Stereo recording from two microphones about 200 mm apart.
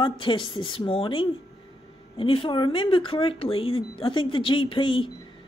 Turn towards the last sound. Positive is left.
turn(degrees=25)  # may be behind; listen again after turning